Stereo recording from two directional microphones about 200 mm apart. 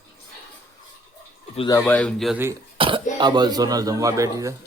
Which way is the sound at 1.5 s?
25° left (ahead or behind).